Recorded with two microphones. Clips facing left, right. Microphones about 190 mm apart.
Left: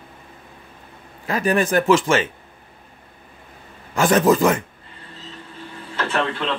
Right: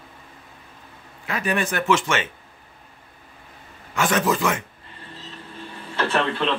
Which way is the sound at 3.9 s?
40° left (ahead or behind).